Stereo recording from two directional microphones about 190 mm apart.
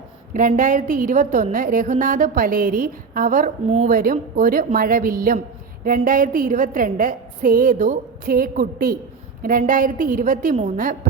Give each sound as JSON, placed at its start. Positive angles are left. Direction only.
{"t": 0.3, "sound": "a woman's voice", "side_deg": -45}